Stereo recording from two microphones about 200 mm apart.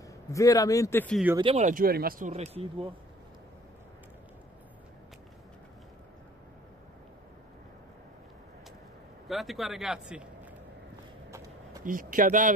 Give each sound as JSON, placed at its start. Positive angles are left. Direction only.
{"t": 0.3, "sound": "speech", "side_deg": 15}
{"t": 1.4, "sound": "speech", "side_deg": -35}
{"t": 9.3, "sound": "speech", "side_deg": 0}
{"t": 11.8, "sound": "speech", "side_deg": -40}